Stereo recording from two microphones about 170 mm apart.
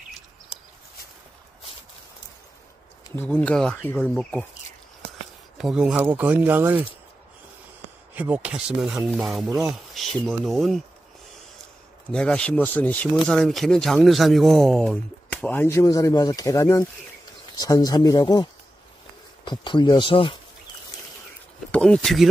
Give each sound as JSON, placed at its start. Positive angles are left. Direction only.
{"t": 3.2, "sound": "speech", "side_deg": 5}
{"t": 5.6, "sound": "speech", "side_deg": -5}
{"t": 8.1, "sound": "speech", "side_deg": -10}
{"t": 12.1, "sound": "speech", "side_deg": 5}
{"t": 21.7, "sound": "speech", "side_deg": 5}